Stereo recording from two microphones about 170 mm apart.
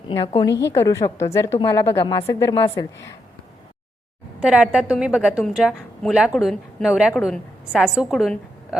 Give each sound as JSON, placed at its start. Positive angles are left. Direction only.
{"t": 0.6, "sound": "a woman's voice", "side_deg": 15}
{"t": 1.5, "sound": "a woman's voice", "side_deg": 25}
{"t": 1.8, "sound": "a woman's voice", "side_deg": 15}
{"t": 4.4, "sound": "a woman's voice", "side_deg": -5}